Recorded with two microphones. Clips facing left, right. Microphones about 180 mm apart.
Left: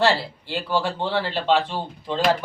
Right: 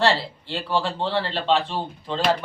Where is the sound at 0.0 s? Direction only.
5° left (ahead or behind).